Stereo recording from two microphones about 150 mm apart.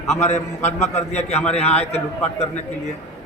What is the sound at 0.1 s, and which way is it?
A man's voice, 50° left (ahead or behind).